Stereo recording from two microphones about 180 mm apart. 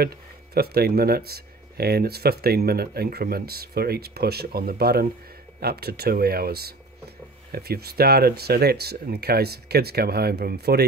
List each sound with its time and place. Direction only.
0.6 s speech: 60° right (ahead or behind)